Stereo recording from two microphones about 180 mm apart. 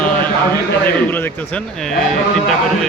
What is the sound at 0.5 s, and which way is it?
A man's voice, 10° left (ahead or behind).